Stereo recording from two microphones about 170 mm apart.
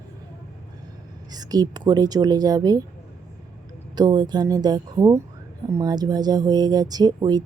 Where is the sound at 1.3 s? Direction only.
20° right (ahead or behind).